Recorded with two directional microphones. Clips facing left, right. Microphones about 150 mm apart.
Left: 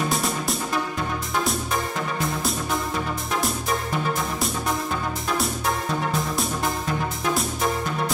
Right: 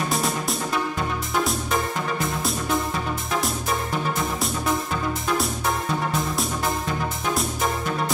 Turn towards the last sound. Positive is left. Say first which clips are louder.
# even
turn(degrees=0)  # may be behind; listen again after turning